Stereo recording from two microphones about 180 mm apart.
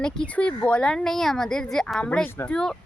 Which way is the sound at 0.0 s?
5° left (ahead or behind).